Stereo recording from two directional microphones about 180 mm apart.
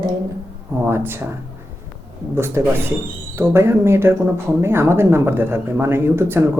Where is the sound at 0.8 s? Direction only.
10° right (ahead or behind).